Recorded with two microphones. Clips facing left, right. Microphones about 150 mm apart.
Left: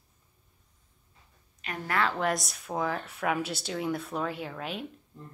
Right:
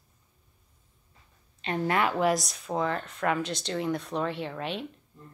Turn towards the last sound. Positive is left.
turn(degrees=0)  # may be behind; listen again after turning